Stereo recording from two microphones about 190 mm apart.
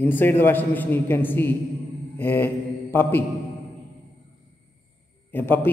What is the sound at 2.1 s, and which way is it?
Mantra, 10° left (ahead or behind).